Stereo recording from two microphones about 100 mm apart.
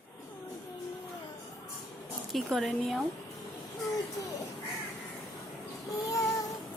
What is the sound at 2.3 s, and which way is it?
Speech, centre (ahead or behind).